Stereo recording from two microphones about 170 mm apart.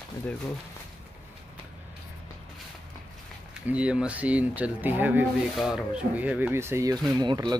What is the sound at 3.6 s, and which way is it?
Speech, 5° right (ahead or behind).